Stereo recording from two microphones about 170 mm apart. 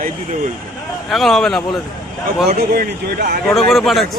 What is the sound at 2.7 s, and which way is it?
Speech, 65° right (ahead or behind).